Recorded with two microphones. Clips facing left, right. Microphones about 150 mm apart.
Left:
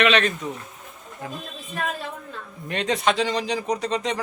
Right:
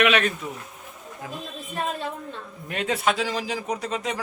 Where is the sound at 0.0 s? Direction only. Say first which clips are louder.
Left 1 dB; 10° right (ahead or behind).